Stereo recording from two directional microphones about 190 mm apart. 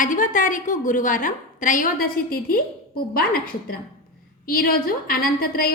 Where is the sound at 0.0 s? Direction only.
45° left (ahead or behind).